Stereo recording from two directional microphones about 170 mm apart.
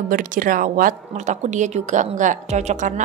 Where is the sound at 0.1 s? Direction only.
55° right (ahead or behind).